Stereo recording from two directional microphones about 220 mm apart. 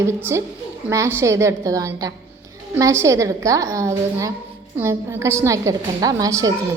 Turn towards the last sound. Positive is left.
turn(degrees=-15)  # may be behind; listen again after turning